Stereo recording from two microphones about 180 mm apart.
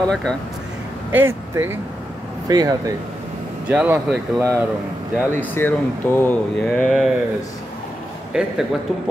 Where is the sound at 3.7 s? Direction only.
10° right (ahead or behind).